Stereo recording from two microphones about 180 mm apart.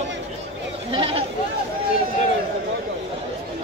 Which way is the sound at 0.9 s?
30° right (ahead or behind).